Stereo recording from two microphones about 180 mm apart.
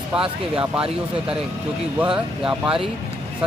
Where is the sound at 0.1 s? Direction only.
5° right (ahead or behind).